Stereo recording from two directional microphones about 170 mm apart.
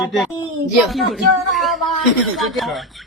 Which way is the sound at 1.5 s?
Centre (ahead or behind).